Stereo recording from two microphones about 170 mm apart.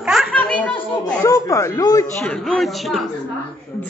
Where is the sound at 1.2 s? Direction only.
20° left (ahead or behind).